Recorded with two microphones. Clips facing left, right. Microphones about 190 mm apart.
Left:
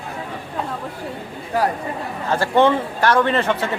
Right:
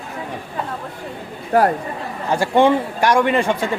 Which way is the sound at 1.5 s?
55° right (ahead or behind).